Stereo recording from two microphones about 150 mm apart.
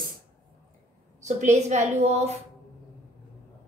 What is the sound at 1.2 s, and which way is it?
A woman's voice, 50° right (ahead or behind).